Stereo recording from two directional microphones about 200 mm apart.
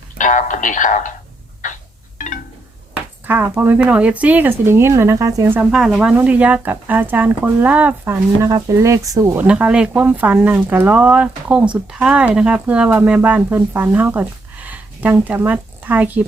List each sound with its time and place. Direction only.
0.2 s speech: 40° left (ahead or behind)
2.1 s a sound: 40° left (ahead or behind)
2.9 s speech: 10° right (ahead or behind)